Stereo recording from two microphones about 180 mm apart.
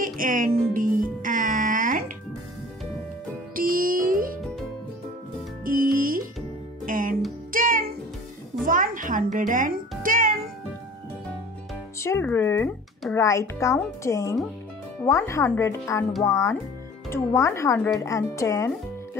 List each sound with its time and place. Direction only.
0.0 s music: 50° right (ahead or behind)
3.5 s music: 50° right (ahead or behind)
5.7 s music: 50° right (ahead or behind)
12.0 s speech: 15° left (ahead or behind)